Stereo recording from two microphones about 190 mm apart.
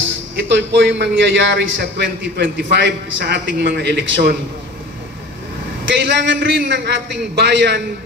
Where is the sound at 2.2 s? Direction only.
65° right (ahead or behind).